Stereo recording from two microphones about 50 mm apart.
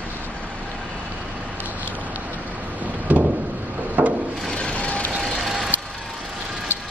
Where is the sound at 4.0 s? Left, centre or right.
Right.